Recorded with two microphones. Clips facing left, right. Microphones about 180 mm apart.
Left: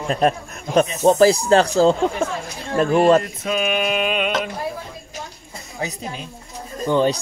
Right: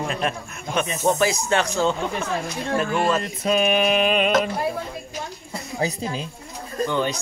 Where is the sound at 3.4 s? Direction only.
40° right (ahead or behind).